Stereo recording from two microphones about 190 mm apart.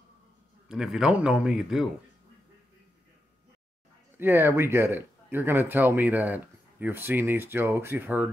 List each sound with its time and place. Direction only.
0.7 s speech: centre (ahead or behind)
4.2 s speech: 10° right (ahead or behind)